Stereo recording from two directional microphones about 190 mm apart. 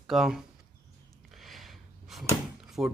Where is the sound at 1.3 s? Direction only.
Centre (ahead or behind).